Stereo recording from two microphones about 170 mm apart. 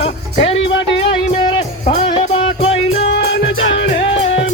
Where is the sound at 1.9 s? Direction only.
30° left (ahead or behind).